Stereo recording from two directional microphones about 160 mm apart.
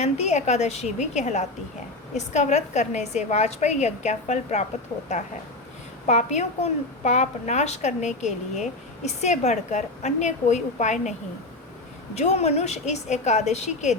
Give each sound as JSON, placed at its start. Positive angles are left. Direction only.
{"t": 0.0, "sound": "a woman's voice", "side_deg": 45}
{"t": 6.1, "sound": "a woman's voice", "side_deg": 45}
{"t": 12.1, "sound": "a woman's voice", "side_deg": 45}